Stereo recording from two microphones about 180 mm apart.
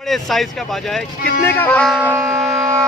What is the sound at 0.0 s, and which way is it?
Speech, centre (ahead or behind).